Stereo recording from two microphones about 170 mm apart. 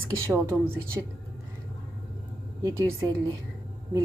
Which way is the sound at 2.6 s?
20° right (ahead or behind).